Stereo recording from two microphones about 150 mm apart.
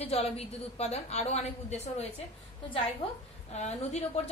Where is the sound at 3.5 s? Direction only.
45° left (ahead or behind).